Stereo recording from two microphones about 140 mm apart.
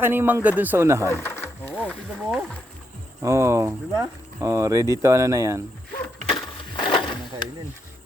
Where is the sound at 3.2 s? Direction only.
20° right (ahead or behind).